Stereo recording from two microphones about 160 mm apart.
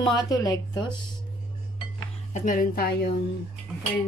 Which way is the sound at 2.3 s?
55° left (ahead or behind).